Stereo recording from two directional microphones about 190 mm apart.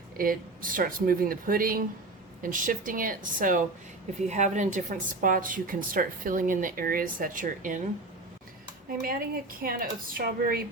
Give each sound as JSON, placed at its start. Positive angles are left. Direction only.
{"t": 0.2, "sound": "a woman's voice", "side_deg": -45}
{"t": 9.0, "sound": "a woman's voice", "side_deg": -50}